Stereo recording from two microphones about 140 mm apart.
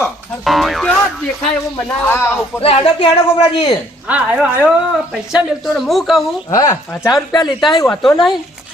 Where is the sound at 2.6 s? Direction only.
40° left (ahead or behind).